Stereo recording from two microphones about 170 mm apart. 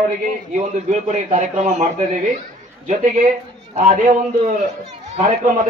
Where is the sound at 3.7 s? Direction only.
50° right (ahead or behind).